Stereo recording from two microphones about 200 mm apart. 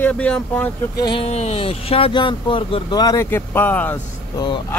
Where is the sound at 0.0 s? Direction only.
5° left (ahead or behind).